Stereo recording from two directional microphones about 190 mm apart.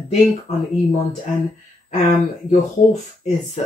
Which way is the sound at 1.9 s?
40° left (ahead or behind).